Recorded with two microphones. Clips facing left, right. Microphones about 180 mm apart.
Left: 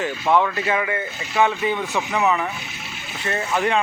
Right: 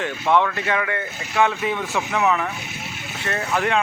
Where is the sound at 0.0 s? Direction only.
5° left (ahead or behind).